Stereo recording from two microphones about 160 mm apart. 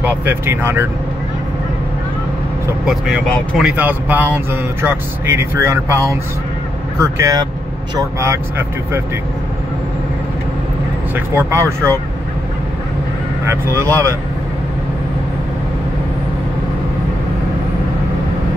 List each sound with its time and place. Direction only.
0.0 s speech: 10° right (ahead or behind)
2.8 s speech: centre (ahead or behind)
3.7 s speech: 10° right (ahead or behind)
11.1 s speech: 15° right (ahead or behind)
13.5 s speech: 15° right (ahead or behind)